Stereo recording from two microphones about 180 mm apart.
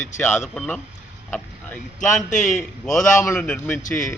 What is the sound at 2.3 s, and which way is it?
Speech, 45° left (ahead or behind).